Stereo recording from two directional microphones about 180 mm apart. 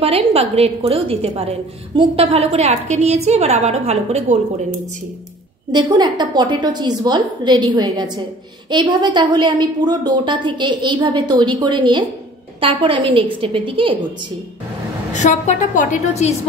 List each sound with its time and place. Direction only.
0.0 s a woman's voice: 35° right (ahead or behind)
5.7 s a woman's voice: 25° right (ahead or behind)
15.1 s a woman's voice: 40° left (ahead or behind)